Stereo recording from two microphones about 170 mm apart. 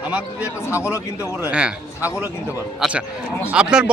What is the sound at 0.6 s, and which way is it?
Speech, 15° left (ahead or behind).